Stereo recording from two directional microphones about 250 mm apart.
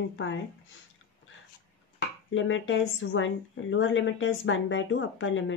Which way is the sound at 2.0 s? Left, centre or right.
Left.